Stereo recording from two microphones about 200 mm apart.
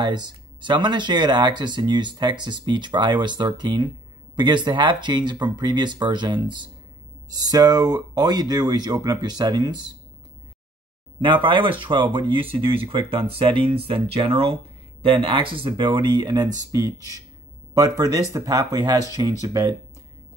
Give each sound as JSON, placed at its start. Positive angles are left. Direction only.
{"t": 0.0, "sound": "speech", "side_deg": -20}
{"t": 11.1, "sound": "speech", "side_deg": -25}